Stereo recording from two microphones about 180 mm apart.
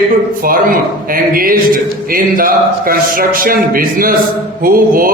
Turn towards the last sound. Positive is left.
turn(degrees=-50)  # may be behind; listen again after turning